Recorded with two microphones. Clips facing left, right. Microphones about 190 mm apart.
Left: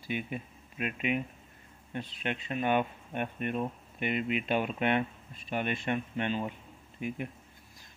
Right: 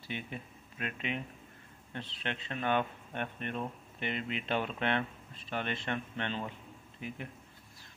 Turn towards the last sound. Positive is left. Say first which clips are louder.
# left 6 dB
turn(degrees=15)  # may be behind; listen again after turning